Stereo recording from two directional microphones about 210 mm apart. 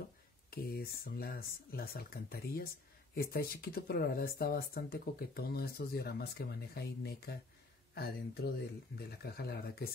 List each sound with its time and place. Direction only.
0.5 s speech: 45° left (ahead or behind)